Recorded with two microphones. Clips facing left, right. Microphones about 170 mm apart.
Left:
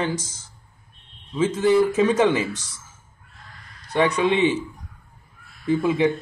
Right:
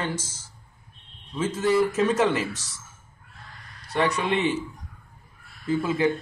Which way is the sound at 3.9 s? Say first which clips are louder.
Left 5 dB; 15° left (ahead or behind).